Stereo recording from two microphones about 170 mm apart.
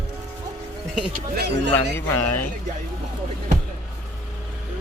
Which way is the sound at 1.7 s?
10° left (ahead or behind).